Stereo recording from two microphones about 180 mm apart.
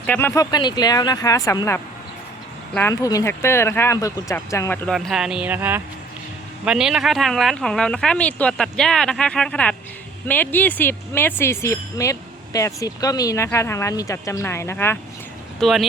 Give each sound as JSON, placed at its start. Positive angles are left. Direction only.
{"t": 0.0, "sound": "speech", "side_deg": 10}
{"t": 0.5, "sound": "speech", "side_deg": 20}
{"t": 2.9, "sound": "speech", "side_deg": 20}
{"t": 4.9, "sound": "speech", "side_deg": 0}
{"t": 15.6, "sound": "speech", "side_deg": 0}